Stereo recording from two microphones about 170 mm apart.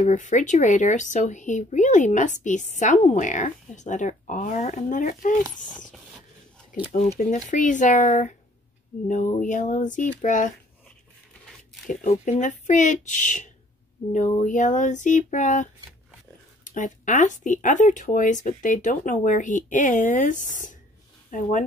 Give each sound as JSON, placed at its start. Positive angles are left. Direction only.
{"t": 0.0, "sound": "speech", "side_deg": 45}
{"t": 7.2, "sound": "speech", "side_deg": 45}
{"t": 11.9, "sound": "speech", "side_deg": 45}